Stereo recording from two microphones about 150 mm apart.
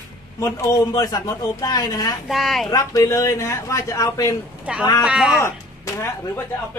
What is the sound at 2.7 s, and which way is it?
Speech, 25° left (ahead or behind).